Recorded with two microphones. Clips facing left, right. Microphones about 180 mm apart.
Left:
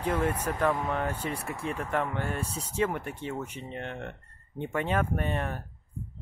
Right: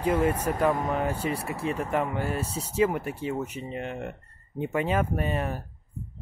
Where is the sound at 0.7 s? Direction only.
40° right (ahead or behind).